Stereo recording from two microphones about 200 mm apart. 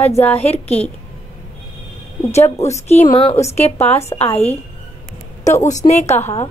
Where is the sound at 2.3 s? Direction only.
35° left (ahead or behind).